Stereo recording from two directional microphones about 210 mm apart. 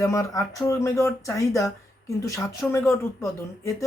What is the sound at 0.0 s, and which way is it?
Speech, 15° left (ahead or behind).